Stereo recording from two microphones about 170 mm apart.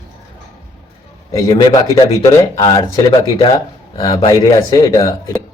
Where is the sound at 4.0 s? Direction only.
30° left (ahead or behind).